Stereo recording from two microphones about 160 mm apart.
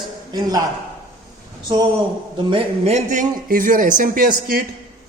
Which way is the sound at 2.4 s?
40° right (ahead or behind).